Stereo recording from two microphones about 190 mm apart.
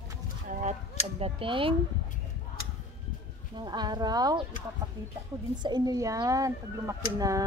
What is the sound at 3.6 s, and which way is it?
Speech, 20° right (ahead or behind).